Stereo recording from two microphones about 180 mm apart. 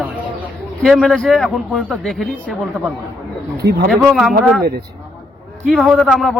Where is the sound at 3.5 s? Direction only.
60° right (ahead or behind).